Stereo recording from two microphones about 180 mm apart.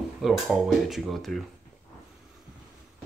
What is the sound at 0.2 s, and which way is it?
Speech, centre (ahead or behind).